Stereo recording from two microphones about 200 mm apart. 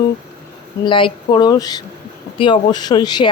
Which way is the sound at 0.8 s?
25° left (ahead or behind).